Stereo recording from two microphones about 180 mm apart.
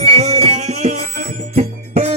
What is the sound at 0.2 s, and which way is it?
Music, 40° right (ahead or behind).